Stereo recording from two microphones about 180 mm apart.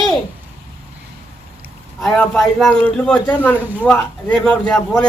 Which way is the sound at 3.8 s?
5° left (ahead or behind).